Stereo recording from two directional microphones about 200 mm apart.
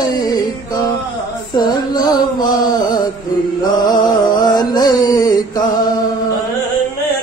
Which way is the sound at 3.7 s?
20° left (ahead or behind).